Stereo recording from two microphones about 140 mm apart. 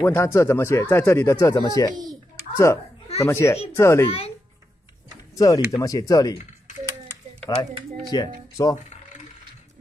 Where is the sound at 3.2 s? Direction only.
20° left (ahead or behind).